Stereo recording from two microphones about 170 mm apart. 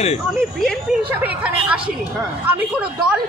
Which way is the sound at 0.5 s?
Centre (ahead or behind).